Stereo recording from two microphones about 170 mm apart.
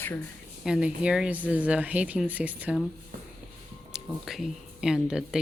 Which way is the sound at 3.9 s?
Centre (ahead or behind).